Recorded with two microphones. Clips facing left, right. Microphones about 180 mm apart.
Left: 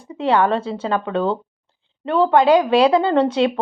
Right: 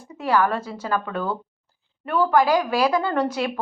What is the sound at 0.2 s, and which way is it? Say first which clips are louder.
Speech: left 4 dB; 25° left (ahead or behind).